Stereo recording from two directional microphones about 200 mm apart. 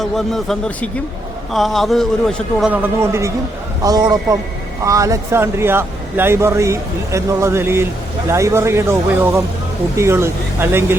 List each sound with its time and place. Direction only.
0.0 s a man's voice: centre (ahead or behind)